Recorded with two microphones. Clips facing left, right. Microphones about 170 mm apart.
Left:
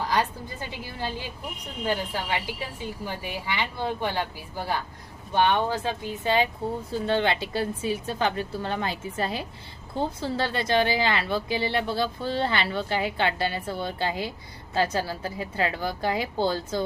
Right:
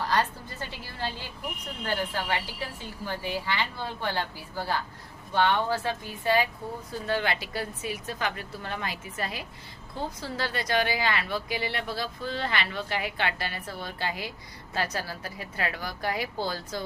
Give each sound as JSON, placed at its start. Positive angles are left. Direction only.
{"t": 0.1, "sound": "a woman's voice", "side_deg": 15}